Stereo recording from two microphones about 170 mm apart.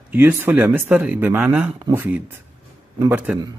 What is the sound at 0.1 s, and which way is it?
Speech, 10° right (ahead or behind).